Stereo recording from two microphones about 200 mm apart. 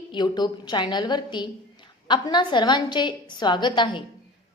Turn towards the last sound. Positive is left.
turn(degrees=25)  # may be behind; listen again after turning